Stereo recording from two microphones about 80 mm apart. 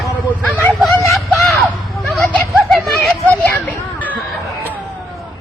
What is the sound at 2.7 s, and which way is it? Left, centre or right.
Children playing, centre.